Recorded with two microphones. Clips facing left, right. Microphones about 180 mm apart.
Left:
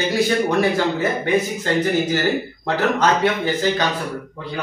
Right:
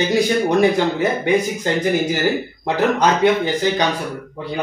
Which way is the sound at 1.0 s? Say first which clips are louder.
Right 2 dB; 15° right (ahead or behind).